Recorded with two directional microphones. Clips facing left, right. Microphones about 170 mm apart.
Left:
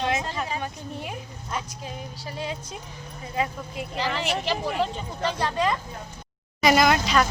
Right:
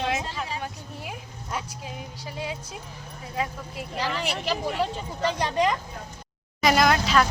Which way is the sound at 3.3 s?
Centre (ahead or behind).